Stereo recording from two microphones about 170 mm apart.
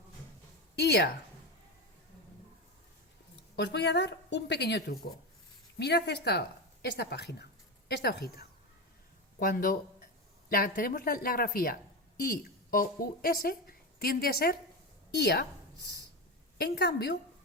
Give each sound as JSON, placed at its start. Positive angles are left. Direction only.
{"t": 0.8, "sound": "a woman's voice", "side_deg": 80}
{"t": 3.5, "sound": "a woman's voice", "side_deg": 85}
{"t": 9.4, "sound": "a woman's voice", "side_deg": 55}
{"t": 16.6, "sound": "a woman's voice", "side_deg": 75}